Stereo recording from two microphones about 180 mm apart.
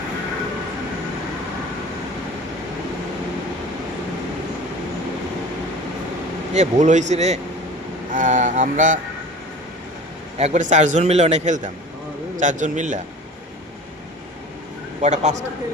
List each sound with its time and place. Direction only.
6.5 s a man's voice: 40° right (ahead or behind)
10.3 s a man's voice: 40° right (ahead or behind)
15.0 s a man's voice: 40° right (ahead or behind)